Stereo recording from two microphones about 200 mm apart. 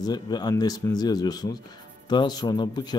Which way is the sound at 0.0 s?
20° left (ahead or behind).